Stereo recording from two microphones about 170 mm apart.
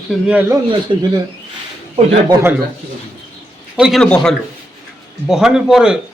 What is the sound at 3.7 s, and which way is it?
A man's voice, centre (ahead or behind).